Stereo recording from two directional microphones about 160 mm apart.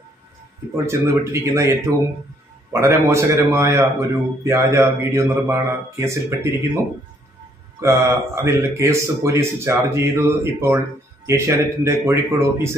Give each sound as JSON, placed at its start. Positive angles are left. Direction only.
{"t": 0.8, "sound": "a man's voice", "side_deg": -20}
{"t": 7.8, "sound": "a man's voice", "side_deg": -20}